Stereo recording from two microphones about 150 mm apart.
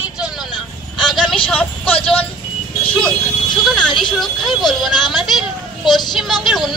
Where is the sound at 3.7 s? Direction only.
Centre (ahead or behind).